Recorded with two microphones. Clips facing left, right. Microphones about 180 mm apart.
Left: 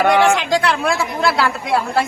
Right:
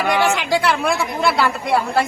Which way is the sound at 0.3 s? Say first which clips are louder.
Left 1 dB; centre (ahead or behind).